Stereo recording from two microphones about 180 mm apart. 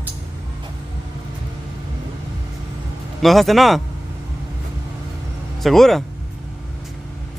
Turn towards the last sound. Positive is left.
turn(degrees=0)  # may be behind; listen again after turning